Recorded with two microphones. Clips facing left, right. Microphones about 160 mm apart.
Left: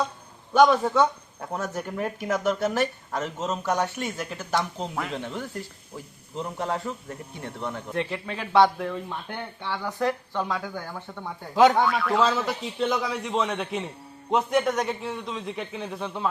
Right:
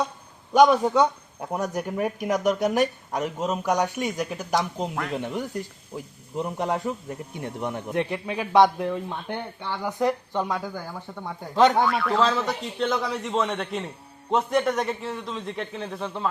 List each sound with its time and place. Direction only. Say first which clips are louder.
0.5 s speech: right 1 dB; 15° right (ahead or behind)
10.5 s a man's voice: right 1 dB; 5° right (ahead or behind)